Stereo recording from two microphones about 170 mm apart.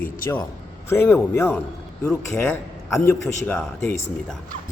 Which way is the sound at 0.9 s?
15° left (ahead or behind).